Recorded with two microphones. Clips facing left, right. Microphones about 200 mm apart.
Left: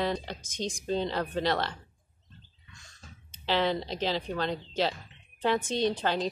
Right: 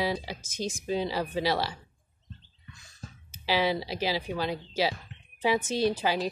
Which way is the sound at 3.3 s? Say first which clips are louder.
Right 1 dB; 5° right (ahead or behind).